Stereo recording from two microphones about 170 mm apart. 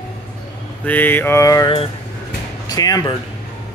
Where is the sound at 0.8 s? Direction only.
10° left (ahead or behind).